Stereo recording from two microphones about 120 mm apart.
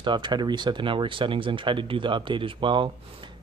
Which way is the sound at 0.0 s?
40° right (ahead or behind).